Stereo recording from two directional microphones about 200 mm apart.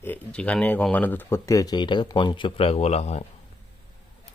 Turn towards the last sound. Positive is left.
turn(degrees=30)  # may be behind; listen again after turning